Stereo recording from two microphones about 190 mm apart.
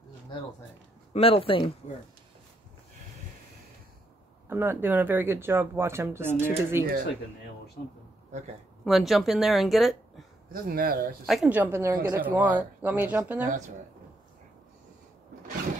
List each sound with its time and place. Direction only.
1.1 s speech: 30° left (ahead or behind)
4.5 s speech: 10° right (ahead or behind)
8.8 s speech: centre (ahead or behind)
10.5 s speech: 50° right (ahead or behind)
11.2 s speech: 5° right (ahead or behind)